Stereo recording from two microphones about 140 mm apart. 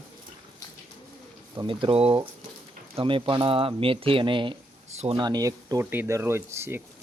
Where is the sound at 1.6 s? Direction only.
40° right (ahead or behind).